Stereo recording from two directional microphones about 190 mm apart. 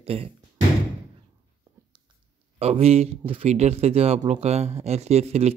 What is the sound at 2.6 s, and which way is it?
Speech, 30° right (ahead or behind).